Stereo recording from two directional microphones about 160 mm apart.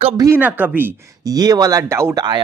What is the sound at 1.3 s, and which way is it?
Speech, 25° right (ahead or behind).